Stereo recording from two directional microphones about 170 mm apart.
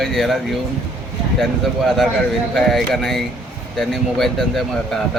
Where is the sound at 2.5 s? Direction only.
Centre (ahead or behind).